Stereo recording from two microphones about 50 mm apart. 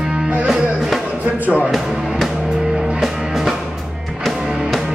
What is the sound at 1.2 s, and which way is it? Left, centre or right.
Music, right.